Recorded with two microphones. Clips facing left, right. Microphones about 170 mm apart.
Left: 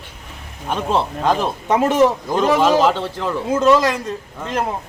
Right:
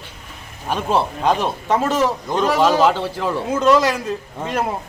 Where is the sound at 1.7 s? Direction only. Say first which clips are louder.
Left 3 dB; 15° left (ahead or behind).